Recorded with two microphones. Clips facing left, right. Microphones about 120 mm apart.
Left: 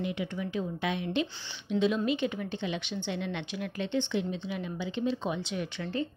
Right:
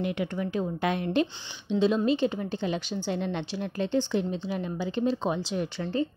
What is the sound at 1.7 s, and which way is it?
A woman's voice, 30° right (ahead or behind).